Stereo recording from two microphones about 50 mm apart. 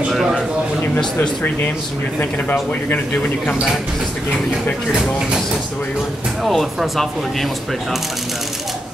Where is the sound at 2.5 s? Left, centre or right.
Left.